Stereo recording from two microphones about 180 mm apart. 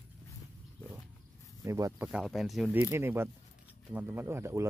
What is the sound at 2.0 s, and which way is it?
Speech, 5° right (ahead or behind).